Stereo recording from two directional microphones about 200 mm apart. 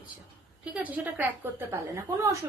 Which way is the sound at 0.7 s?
10° right (ahead or behind).